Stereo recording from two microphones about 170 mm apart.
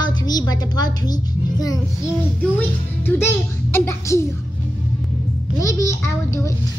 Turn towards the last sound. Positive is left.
turn(degrees=15)  # may be behind; listen again after turning